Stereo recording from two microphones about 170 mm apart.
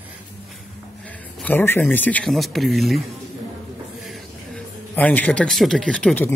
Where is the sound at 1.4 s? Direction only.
10° left (ahead or behind).